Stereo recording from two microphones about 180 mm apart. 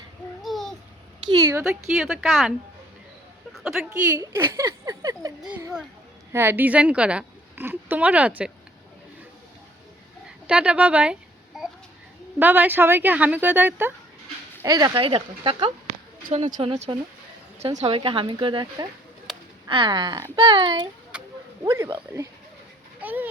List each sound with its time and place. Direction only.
0.4 s babbling: centre (ahead or behind)
1.2 s a woman's voice: 20° right (ahead or behind)
2.0 s speech: centre (ahead or behind)
3.5 s a sound: 5° right (ahead or behind)
4.2 s a woman's voice: 15° right (ahead or behind)
10.4 s a sound: 5° right (ahead or behind)
12.4 s a woman's voice: 10° right (ahead or behind); by 16.7 s 35° right (ahead or behind)
17.7 s speech: 30° right (ahead or behind)
19.3 s a sound: centre (ahead or behind)
19.6 s speech: 25° right (ahead or behind)
21.1 s a sound: 5° right (ahead or behind)
21.6 s a woman's voice: 15° right (ahead or behind)